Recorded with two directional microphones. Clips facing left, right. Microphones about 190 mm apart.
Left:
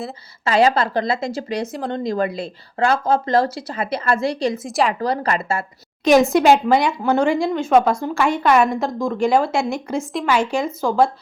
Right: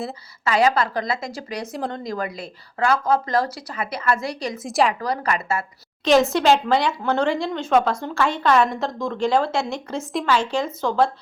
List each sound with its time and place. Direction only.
0.4 s speech: 30° left (ahead or behind)
4.6 s a woman's voice: centre (ahead or behind)
4.9 s speech: 30° left (ahead or behind)
6.1 s speech: 10° left (ahead or behind)